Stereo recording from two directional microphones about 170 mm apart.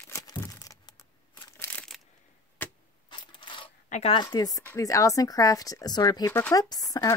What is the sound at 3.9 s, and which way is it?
Speech, 35° left (ahead or behind).